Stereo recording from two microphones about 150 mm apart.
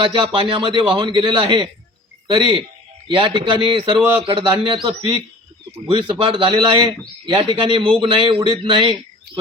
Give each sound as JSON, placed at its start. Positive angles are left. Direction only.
{"t": 0.0, "sound": "a man's voice", "side_deg": -35}